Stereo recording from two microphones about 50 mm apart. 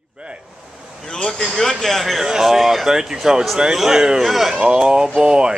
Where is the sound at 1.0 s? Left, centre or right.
Centre.